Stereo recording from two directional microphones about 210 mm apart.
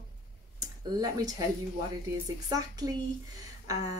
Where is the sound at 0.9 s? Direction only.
15° right (ahead or behind).